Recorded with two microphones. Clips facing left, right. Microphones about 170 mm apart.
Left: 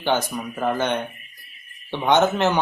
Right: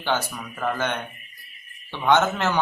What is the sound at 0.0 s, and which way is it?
Speech, 15° left (ahead or behind).